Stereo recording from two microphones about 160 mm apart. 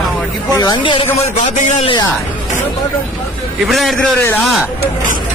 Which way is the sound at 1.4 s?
50° left (ahead or behind).